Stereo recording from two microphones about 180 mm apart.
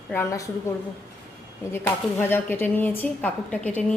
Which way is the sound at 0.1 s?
15° left (ahead or behind).